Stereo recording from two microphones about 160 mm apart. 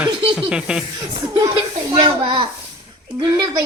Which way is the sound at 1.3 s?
30° right (ahead or behind).